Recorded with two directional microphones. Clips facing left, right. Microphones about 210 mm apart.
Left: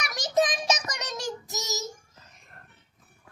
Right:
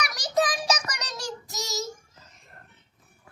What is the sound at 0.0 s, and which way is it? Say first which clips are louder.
Child singing: left 1 dB; 25° left (ahead or behind).